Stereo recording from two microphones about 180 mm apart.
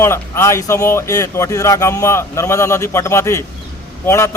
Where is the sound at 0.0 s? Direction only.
15° left (ahead or behind).